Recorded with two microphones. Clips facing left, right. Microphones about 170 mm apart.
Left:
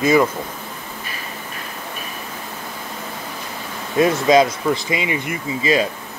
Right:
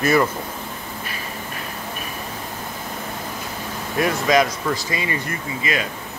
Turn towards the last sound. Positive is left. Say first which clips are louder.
# left 7 dB
turn(degrees=30)  # may be behind; listen again after turning